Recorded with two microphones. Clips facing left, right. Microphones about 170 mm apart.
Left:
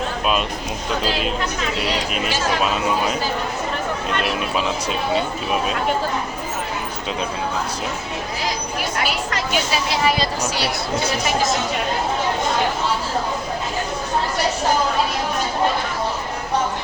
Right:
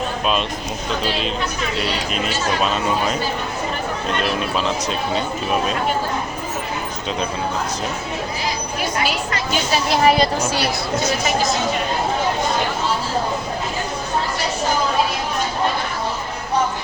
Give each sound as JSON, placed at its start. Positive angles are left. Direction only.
{"t": 2.6, "sound": "speech", "side_deg": 5}
{"t": 4.4, "sound": "speech", "side_deg": 5}
{"t": 9.9, "sound": "speech", "side_deg": -55}